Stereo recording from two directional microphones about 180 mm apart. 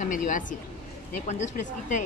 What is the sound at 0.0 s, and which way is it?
A woman's voice, 45° left (ahead or behind).